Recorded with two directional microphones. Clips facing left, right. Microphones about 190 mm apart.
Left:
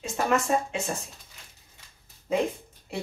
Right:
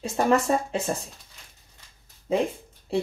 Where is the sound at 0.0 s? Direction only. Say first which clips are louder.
Right 4 dB; 35° right (ahead or behind).